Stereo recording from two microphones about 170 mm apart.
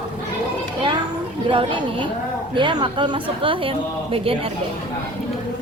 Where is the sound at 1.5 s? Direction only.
30° right (ahead or behind).